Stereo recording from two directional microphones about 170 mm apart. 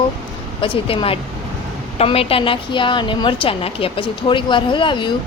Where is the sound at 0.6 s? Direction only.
30° left (ahead or behind).